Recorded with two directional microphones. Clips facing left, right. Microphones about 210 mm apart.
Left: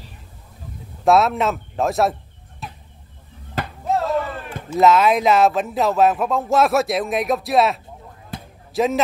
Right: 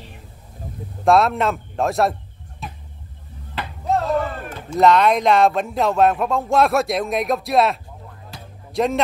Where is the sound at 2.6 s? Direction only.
Centre (ahead or behind).